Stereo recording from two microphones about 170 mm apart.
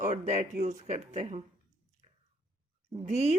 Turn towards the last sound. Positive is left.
turn(degrees=-40)  # may be behind; listen again after turning